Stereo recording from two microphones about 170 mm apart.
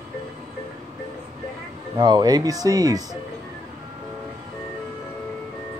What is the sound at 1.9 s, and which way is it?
Speech, 25° right (ahead or behind).